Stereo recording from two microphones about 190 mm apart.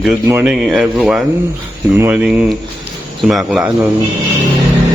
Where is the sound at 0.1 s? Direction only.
10° right (ahead or behind).